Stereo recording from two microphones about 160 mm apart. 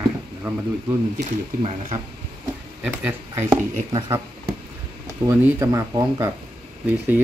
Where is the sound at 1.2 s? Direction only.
45° right (ahead or behind).